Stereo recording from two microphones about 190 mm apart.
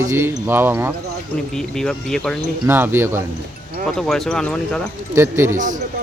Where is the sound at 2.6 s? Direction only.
10° right (ahead or behind).